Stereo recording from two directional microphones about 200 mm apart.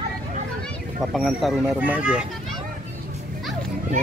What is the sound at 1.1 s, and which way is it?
Speech, centre (ahead or behind).